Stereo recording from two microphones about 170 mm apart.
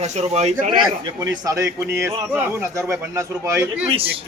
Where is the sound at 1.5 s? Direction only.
15° right (ahead or behind).